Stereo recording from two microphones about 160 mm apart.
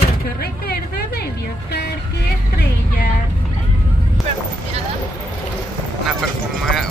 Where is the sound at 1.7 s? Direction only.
90° left.